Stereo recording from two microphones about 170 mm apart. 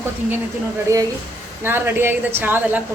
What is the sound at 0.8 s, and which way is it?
Speech, 20° right (ahead or behind).